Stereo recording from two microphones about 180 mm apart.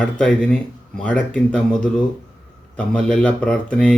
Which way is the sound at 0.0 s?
5° left (ahead or behind).